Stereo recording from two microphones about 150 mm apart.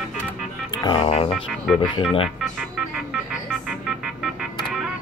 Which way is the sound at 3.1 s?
5° right (ahead or behind).